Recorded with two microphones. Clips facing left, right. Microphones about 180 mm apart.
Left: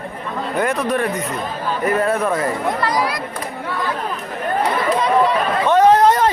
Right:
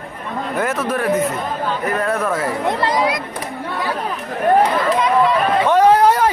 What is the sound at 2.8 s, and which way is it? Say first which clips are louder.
Speech: right 2 dB; 25° right (ahead or behind).